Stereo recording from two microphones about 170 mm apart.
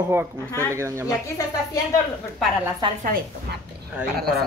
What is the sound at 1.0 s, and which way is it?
Speech, 20° left (ahead or behind).